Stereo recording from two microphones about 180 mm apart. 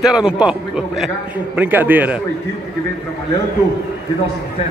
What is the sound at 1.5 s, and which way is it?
Speech, 10° right (ahead or behind).